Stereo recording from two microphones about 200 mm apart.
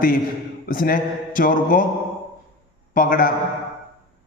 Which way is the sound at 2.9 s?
45° left (ahead or behind).